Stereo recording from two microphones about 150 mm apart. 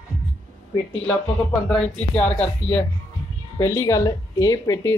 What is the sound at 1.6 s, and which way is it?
Speech, 5° left (ahead or behind).